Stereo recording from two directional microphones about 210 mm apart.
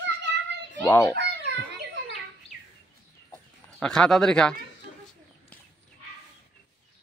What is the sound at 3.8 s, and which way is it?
Speech, 5° left (ahead or behind).